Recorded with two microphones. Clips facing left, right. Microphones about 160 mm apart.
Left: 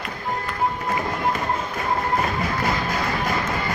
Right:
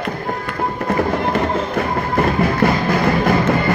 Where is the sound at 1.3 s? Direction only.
65° right (ahead or behind).